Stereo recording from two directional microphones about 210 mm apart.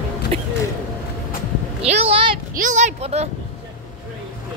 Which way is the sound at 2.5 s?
35° right (ahead or behind).